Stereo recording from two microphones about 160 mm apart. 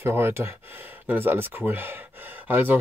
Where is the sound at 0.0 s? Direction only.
15° right (ahead or behind).